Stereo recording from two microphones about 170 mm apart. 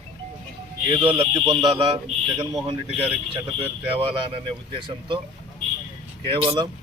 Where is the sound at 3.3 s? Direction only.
35° right (ahead or behind).